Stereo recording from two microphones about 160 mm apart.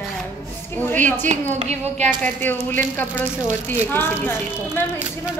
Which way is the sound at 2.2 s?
10° left (ahead or behind).